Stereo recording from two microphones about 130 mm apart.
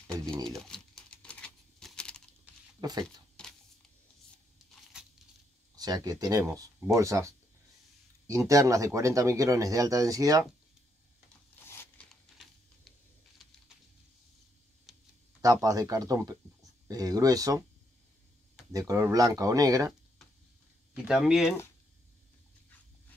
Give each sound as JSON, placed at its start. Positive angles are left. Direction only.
{"t": 0.1, "sound": "speech", "side_deg": 5}
{"t": 0.7, "sound": "a sound", "side_deg": 5}
{"t": 2.5, "sound": "a sound", "side_deg": -10}
{"t": 2.8, "sound": "speech", "side_deg": -30}
{"t": 3.4, "sound": "shuffling cards", "side_deg": 5}
{"t": 5.8, "sound": "speech", "side_deg": -30}
{"t": 11.6, "sound": "zipper", "side_deg": 20}
{"t": 14.9, "sound": "a sound", "side_deg": 0}
{"t": 15.4, "sound": "speech", "side_deg": -30}
{"t": 18.7, "sound": "speech", "side_deg": -25}
{"t": 20.9, "sound": "speech", "side_deg": -5}